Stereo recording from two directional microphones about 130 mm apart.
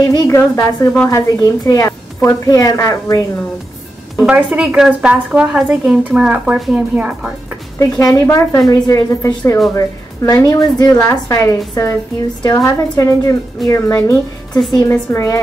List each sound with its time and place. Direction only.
0.0 s a woman's voice: 25° left (ahead or behind)
4.2 s a woman's voice: 10° right (ahead or behind)
8.0 s a woman's voice: 25° left (ahead or behind)